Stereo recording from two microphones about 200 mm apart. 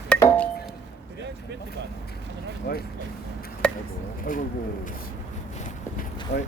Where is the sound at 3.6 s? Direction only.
5° left (ahead or behind).